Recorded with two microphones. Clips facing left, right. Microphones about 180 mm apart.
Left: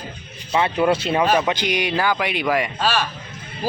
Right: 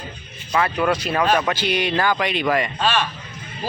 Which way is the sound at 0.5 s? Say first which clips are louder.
Left 2 dB; 25° left (ahead or behind).